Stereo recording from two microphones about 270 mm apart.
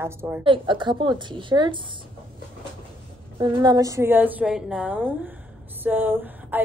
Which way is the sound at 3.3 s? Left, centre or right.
Centre.